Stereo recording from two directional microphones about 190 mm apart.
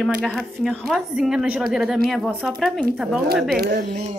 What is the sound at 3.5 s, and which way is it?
Speech, 55° right (ahead or behind).